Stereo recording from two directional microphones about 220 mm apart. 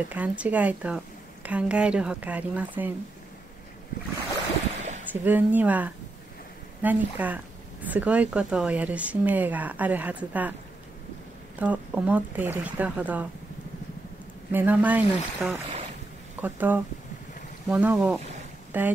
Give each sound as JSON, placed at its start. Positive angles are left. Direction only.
{"t": 0.1, "sound": "speech", "side_deg": -5}
{"t": 4.7, "sound": "a sound", "side_deg": -30}
{"t": 5.1, "sound": "speech", "side_deg": -10}
{"t": 11.5, "sound": "speech", "side_deg": -5}
{"t": 14.5, "sound": "speech", "side_deg": -10}
{"t": 15.5, "sound": "speech", "side_deg": -25}
{"t": 16.3, "sound": "speech", "side_deg": -10}